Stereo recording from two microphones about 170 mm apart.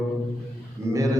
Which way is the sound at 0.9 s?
20° right (ahead or behind).